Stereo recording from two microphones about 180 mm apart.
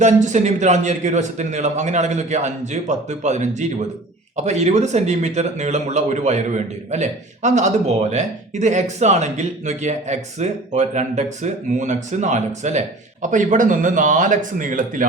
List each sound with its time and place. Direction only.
0.0 s a man's voice: 40° right (ahead or behind)